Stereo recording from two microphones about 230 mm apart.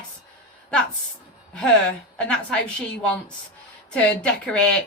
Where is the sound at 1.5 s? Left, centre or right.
Centre.